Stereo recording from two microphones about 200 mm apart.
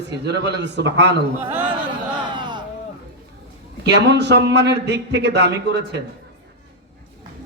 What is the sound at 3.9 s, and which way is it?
A man's voice, 60° right (ahead or behind).